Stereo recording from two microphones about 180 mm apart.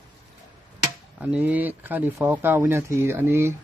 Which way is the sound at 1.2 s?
10° right (ahead or behind).